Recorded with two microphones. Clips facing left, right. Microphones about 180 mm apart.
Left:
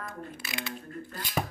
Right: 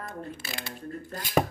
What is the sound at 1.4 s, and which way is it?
Speech, 70° right (ahead or behind).